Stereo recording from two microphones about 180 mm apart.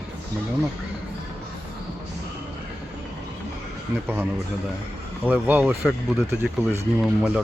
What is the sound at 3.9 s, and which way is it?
Speech, 10° right (ahead or behind).